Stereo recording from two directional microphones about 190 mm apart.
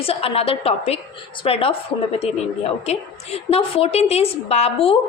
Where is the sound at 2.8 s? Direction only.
35° left (ahead or behind).